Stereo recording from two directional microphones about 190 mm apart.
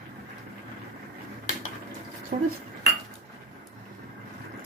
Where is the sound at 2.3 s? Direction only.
45° right (ahead or behind).